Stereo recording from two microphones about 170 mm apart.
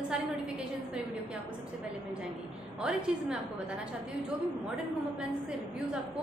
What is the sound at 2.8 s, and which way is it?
A woman's voice, 5° right (ahead or behind).